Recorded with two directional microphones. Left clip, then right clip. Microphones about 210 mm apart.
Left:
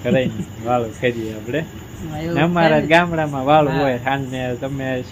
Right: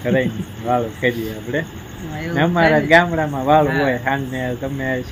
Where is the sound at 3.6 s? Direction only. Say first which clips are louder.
Even; 20° left (ahead or behind).